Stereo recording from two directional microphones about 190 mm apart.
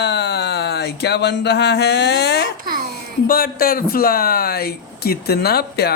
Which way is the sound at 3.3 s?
50° left (ahead or behind).